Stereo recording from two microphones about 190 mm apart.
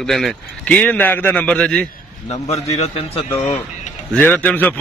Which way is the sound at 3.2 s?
15° left (ahead or behind).